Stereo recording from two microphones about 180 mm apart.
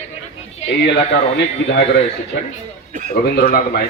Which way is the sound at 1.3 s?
75° left (ahead or behind).